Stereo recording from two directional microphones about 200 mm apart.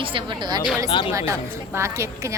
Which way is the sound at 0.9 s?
25° left (ahead or behind).